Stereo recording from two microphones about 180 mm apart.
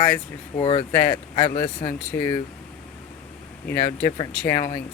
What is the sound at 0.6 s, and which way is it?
Speech, 30° left (ahead or behind).